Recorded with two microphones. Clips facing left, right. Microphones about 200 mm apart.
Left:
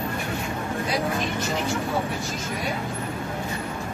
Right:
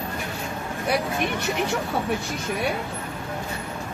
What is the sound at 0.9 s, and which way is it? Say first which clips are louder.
Speech: right 4 dB; 60° right (ahead or behind).